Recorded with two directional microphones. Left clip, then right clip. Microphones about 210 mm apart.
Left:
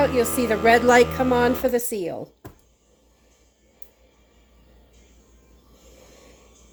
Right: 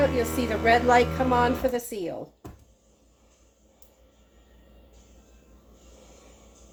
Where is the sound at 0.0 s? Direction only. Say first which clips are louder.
Left 4 dB; 45° left (ahead or behind).